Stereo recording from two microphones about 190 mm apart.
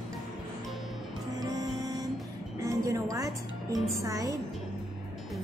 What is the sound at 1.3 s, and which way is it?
Music, 20° right (ahead or behind).